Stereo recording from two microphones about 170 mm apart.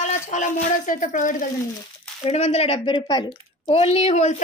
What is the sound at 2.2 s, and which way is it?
Speech, 40° left (ahead or behind).